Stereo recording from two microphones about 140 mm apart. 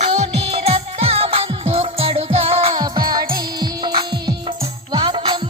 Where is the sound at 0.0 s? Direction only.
50° right (ahead or behind).